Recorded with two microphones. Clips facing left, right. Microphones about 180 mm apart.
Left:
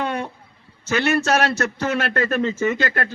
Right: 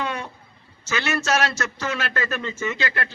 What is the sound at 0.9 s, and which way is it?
A man's voice, 55° left (ahead or behind).